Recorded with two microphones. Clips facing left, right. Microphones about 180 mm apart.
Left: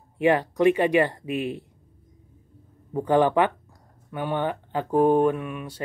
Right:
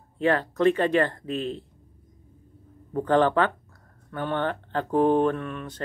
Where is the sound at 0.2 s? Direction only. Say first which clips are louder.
Left 2 dB; 15° left (ahead or behind).